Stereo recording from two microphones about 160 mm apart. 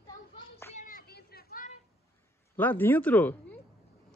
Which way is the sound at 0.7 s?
60° left (ahead or behind).